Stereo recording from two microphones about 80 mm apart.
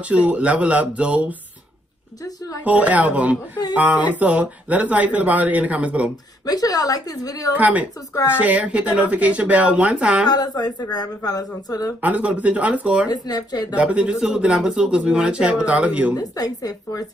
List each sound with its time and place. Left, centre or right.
0.0 s speech: centre
2.6 s speech: centre
6.4 s a woman's voice: left
7.5 s speech: centre
10.2 s speech: left
12.0 s speech: centre
13.1 s speech: left
13.7 s speech: centre
16.2 s a woman's voice: left